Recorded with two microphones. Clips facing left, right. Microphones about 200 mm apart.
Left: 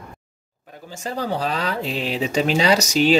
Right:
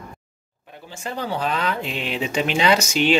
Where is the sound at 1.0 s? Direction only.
40° left (ahead or behind).